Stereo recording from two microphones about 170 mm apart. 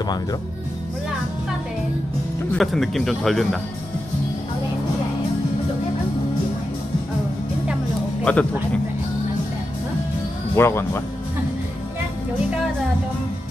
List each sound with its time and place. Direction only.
0.0 s speech: 25° left (ahead or behind)
2.5 s speech: centre (ahead or behind)
8.2 s speech: 5° left (ahead or behind)
10.5 s speech: 15° left (ahead or behind)